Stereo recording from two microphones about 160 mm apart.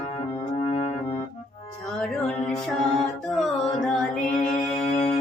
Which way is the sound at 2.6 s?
Centre (ahead or behind).